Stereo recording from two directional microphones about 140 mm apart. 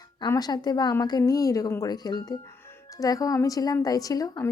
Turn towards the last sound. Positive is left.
turn(degrees=25)  # may be behind; listen again after turning